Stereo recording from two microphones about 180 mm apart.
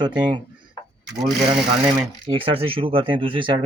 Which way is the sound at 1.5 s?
Centre (ahead or behind).